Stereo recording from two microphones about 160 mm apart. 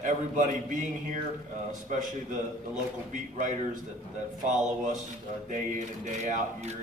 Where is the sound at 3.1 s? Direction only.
50° right (ahead or behind).